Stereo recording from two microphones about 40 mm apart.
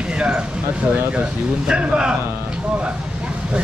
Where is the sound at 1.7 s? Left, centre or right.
Right.